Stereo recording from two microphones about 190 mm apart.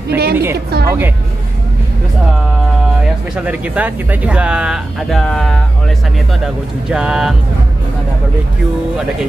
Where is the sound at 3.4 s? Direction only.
10° right (ahead or behind).